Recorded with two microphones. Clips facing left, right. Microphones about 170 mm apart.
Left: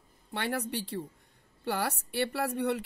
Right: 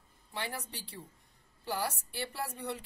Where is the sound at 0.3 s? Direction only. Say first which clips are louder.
Left 8 dB; 65° left (ahead or behind).